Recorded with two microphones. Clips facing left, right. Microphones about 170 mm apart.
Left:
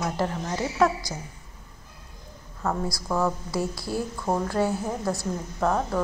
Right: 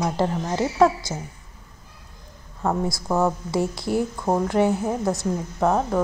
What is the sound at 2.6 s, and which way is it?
A woman's voice, 25° right (ahead or behind).